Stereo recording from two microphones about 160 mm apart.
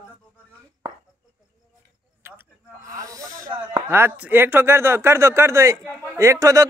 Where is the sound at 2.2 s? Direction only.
15° right (ahead or behind).